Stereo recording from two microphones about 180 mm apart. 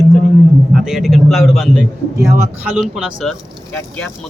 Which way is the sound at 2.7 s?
5° right (ahead or behind).